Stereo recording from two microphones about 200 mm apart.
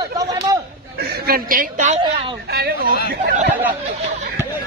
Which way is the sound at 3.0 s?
50° right (ahead or behind).